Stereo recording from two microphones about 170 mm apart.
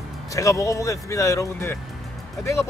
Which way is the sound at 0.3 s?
20° left (ahead or behind).